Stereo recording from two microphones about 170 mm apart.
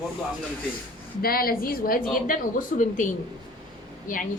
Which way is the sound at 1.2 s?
60° left (ahead or behind).